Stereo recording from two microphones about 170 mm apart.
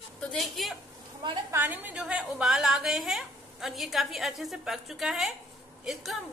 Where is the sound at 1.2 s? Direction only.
25° right (ahead or behind).